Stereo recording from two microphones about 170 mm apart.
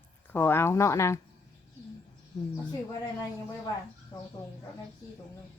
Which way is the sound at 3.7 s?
20° left (ahead or behind).